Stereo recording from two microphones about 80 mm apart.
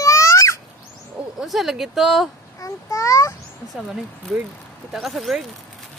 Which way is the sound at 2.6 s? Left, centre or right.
Left.